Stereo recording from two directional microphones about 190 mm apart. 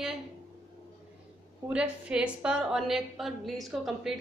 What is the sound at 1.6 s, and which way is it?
A woman's voice, 5° right (ahead or behind).